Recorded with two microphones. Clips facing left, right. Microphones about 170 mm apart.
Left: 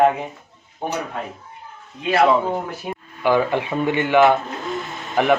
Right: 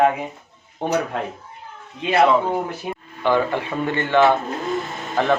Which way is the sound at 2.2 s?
Centre (ahead or behind).